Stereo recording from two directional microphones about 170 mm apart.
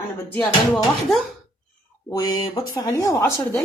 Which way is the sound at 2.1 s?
25° left (ahead or behind).